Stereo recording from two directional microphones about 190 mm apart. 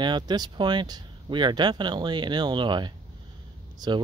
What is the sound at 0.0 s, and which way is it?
Speech, 25° right (ahead or behind).